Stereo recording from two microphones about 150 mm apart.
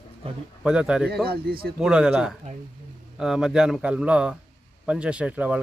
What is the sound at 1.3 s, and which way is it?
Speech, 90° right.